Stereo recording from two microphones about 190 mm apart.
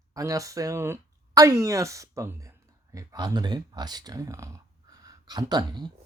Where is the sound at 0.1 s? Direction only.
15° right (ahead or behind).